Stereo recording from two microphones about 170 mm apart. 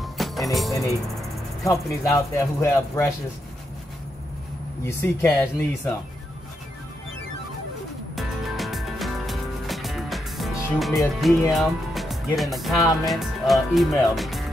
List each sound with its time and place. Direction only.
0.0 s music: centre (ahead or behind)
2.1 s speech: 15° left (ahead or behind)
4.8 s speech: 15° left (ahead or behind)
8.2 s music: centre (ahead or behind)
12.4 s speech: centre (ahead or behind)